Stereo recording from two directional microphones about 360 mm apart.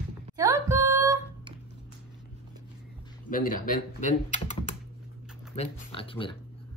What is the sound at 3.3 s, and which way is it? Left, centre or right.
Speech, left.